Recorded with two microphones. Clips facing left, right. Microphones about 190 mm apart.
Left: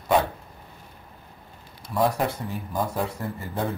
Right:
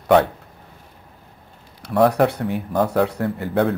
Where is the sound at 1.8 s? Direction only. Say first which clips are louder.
Right 8 dB; 65° right (ahead or behind).